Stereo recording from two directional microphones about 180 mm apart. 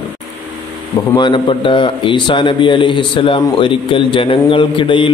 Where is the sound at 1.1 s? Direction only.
25° left (ahead or behind).